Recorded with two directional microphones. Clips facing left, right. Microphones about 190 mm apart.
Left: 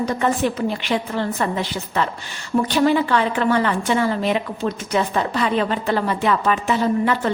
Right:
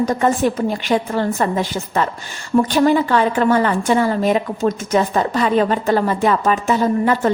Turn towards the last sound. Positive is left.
turn(degrees=-40)  # may be behind; listen again after turning